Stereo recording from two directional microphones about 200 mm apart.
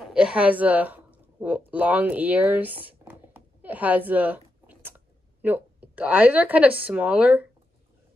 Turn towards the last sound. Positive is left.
turn(degrees=-10)  # may be behind; listen again after turning